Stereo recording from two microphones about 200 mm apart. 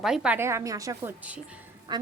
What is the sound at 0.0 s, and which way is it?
A woman's voice, 5° right (ahead or behind).